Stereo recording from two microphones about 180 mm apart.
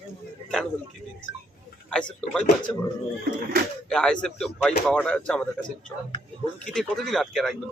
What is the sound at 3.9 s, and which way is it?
Speech, 5° left (ahead or behind).